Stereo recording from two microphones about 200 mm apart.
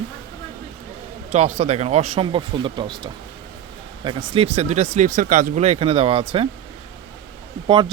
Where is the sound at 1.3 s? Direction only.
30° right (ahead or behind).